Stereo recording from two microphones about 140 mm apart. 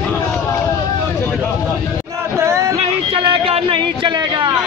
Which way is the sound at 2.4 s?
20° right (ahead or behind).